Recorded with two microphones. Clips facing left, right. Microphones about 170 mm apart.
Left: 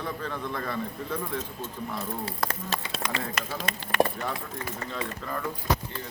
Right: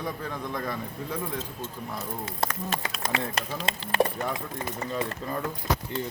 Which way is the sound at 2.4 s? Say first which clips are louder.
Right 4 dB; 25° right (ahead or behind).